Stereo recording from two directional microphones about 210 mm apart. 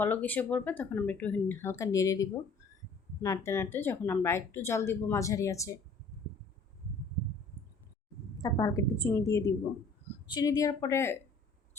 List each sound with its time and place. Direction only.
0.0 s speech: 10° left (ahead or behind)
8.4 s speech: 15° left (ahead or behind)